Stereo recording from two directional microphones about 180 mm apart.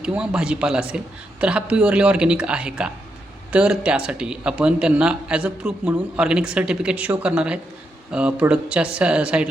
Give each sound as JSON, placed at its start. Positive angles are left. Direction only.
{"t": 0.0, "sound": "a man's voice", "side_deg": -5}